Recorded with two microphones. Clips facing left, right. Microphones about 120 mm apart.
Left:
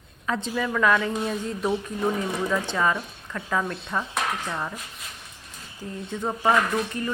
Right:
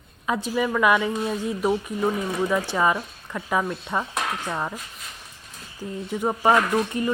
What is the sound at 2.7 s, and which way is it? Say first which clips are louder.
Speech: right 2 dB; 15° right (ahead or behind).